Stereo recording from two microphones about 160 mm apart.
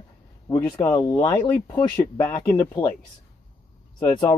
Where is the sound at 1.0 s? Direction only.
25° left (ahead or behind).